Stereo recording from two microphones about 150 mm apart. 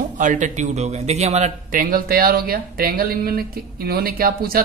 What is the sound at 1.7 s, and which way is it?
Speech, 70° right (ahead or behind).